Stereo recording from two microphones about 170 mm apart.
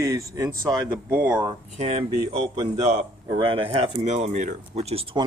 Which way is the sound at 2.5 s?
20° right (ahead or behind).